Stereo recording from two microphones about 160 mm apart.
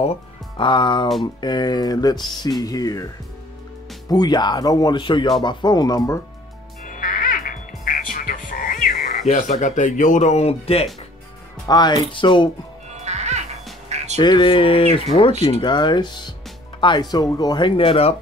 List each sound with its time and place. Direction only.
0.0 s speech: 35° left (ahead or behind)
4.1 s speech: 25° left (ahead or behind)
6.8 s music: 55° left (ahead or behind)
9.3 s speech: 50° left (ahead or behind)
11.6 s speech: 25° left (ahead or behind)
12.9 s music: 45° right (ahead or behind)
14.2 s speech: 30° left (ahead or behind)